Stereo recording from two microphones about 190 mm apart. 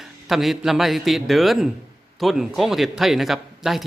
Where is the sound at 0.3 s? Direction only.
Centre (ahead or behind).